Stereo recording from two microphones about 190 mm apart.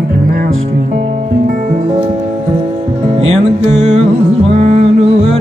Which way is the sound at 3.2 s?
30° right (ahead or behind).